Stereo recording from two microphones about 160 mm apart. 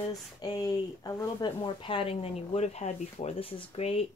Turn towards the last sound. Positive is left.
turn(degrees=40)  # may be behind; listen again after turning